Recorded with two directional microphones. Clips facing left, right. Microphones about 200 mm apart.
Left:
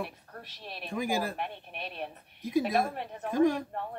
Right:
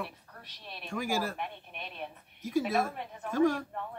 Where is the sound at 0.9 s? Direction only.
20° left (ahead or behind).